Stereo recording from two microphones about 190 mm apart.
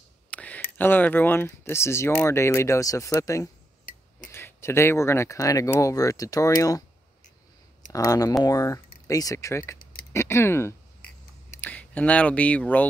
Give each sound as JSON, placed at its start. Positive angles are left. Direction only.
{"t": 0.3, "sound": "speech", "side_deg": 5}
{"t": 7.9, "sound": "speech", "side_deg": 20}